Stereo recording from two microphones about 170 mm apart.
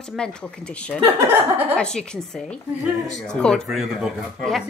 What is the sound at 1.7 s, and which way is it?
Speech, 5° left (ahead or behind).